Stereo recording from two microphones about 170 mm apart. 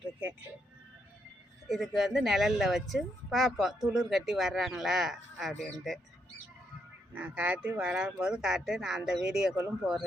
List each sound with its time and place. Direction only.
1.6 s speech: centre (ahead or behind)
7.1 s speech: 10° right (ahead or behind)